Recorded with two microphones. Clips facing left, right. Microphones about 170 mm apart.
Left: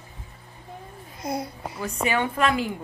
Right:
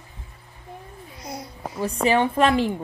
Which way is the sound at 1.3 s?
55° left (ahead or behind).